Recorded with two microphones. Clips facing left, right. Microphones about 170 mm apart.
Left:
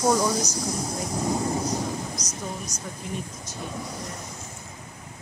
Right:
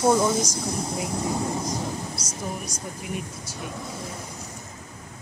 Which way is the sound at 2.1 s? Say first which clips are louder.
Right 1 dB; 10° right (ahead or behind).